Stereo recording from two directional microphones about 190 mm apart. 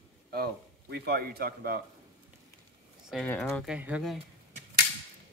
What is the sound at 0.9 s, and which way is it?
Speech, 55° right (ahead or behind).